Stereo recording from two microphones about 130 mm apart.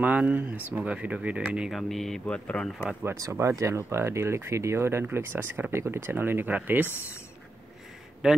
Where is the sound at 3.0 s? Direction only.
20° right (ahead or behind).